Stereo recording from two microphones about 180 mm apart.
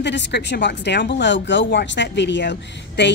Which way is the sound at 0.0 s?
75° left (ahead or behind).